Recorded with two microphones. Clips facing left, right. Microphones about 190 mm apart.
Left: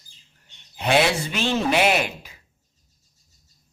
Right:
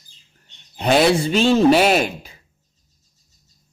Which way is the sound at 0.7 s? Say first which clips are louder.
Right 5 dB; 40° right (ahead or behind).